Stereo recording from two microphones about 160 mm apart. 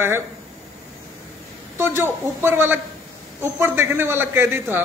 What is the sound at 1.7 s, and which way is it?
A man's voice, 15° right (ahead or behind).